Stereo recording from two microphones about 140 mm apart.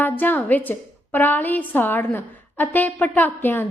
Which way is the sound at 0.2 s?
10° left (ahead or behind).